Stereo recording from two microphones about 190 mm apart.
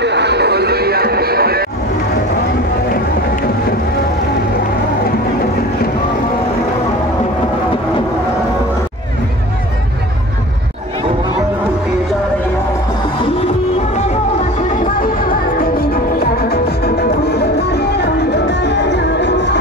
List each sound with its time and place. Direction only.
0.0 s music: 65° right (ahead or behind)
14.7 s music: 45° left (ahead or behind); by 19.6 s 65° left (ahead or behind)